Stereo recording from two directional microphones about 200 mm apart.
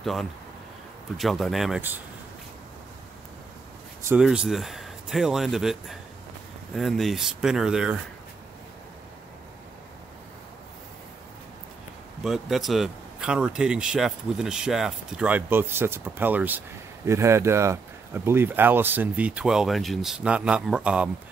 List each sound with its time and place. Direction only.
0.0 s speech: centre (ahead or behind)
4.0 s speech: 5° right (ahead or behind)
12.2 s speech: centre (ahead or behind)